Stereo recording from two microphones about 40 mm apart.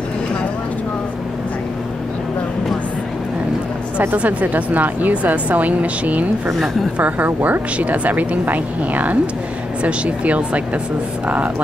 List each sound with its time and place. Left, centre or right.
4.1 s speech: right